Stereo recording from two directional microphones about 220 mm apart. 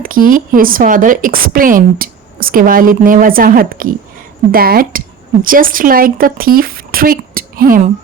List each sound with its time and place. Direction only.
0.0 s a woman's voice: 40° right (ahead or behind)